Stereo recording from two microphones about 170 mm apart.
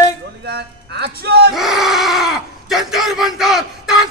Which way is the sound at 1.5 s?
Centre (ahead or behind).